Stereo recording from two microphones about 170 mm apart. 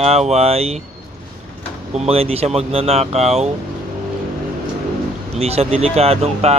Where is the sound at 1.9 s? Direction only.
35° right (ahead or behind).